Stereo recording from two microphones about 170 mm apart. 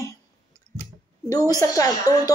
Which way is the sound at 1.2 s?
20° left (ahead or behind).